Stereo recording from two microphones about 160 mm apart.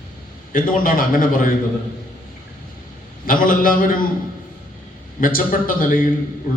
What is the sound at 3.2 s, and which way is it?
Speech, 60° left (ahead or behind).